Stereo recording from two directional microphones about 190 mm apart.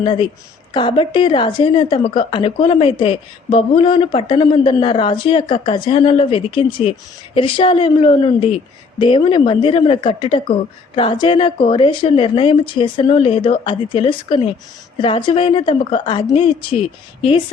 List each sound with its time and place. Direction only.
0.0 s a woman's voice: 25° left (ahead or behind)